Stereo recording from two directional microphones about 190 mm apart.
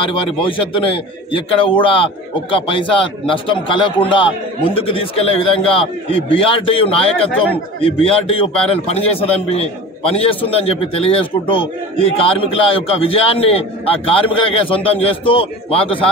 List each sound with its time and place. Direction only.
0.0 s a man's voice: 25° left (ahead or behind)